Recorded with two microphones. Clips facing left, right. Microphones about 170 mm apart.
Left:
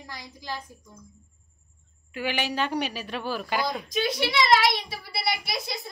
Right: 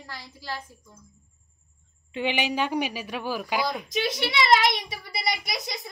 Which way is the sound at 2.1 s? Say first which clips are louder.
Right 2 dB; 20° right (ahead or behind).